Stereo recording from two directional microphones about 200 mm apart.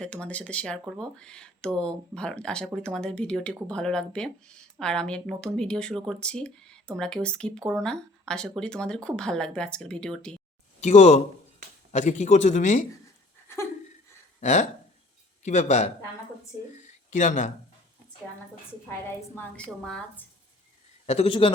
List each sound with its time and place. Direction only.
0.0 s speech: 5° left (ahead or behind)
10.8 s a man's voice: 35° left (ahead or behind)
13.5 s a sound: 15° left (ahead or behind)
14.4 s a man's voice: 35° left (ahead or behind)
16.7 s a sound: 35° left (ahead or behind)
19.4 s speech: 5° left (ahead or behind)
21.1 s a man's voice: 30° left (ahead or behind)